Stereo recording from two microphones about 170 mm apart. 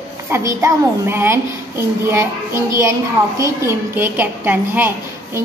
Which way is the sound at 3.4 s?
15° right (ahead or behind).